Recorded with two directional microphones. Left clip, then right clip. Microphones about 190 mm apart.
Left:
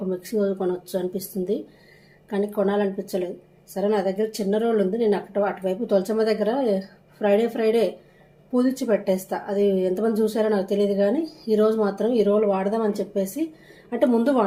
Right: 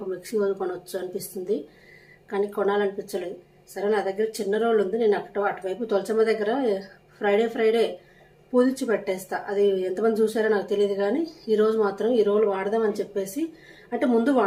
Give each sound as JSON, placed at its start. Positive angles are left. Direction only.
{"t": 0.3, "sound": "speech", "side_deg": 30}